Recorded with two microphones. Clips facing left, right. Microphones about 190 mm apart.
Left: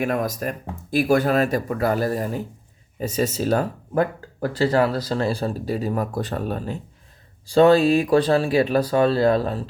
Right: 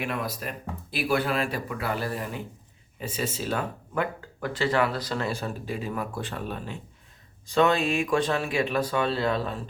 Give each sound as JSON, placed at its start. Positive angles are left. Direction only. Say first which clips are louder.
{"t": 0.0, "sound": "speech", "louder": "left 8 dB", "side_deg": 45}